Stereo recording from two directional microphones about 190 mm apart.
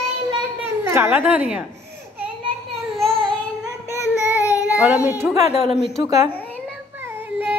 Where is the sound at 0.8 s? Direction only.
10° right (ahead or behind).